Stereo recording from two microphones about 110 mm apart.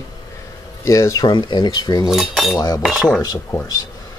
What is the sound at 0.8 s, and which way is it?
Speech, 30° left (ahead or behind).